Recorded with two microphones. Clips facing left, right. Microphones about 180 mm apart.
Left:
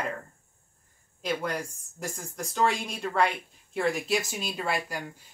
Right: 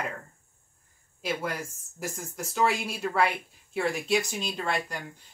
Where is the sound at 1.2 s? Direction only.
5° right (ahead or behind).